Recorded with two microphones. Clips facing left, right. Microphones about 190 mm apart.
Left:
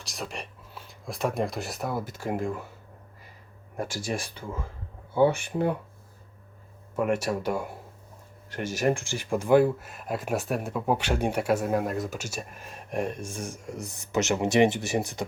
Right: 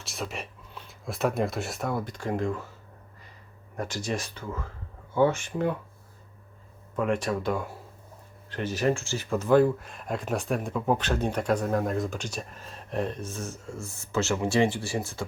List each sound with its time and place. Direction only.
0.0 s speech: centre (ahead or behind)
3.8 s speech: 10° left (ahead or behind)
6.9 s speech: 10° left (ahead or behind)